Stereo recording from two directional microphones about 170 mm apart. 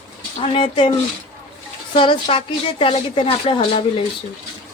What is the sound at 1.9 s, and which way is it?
Speech, 30° left (ahead or behind).